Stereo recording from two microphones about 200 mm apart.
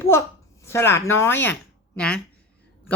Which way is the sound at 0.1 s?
10° left (ahead or behind).